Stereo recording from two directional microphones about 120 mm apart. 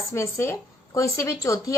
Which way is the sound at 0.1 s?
20° left (ahead or behind).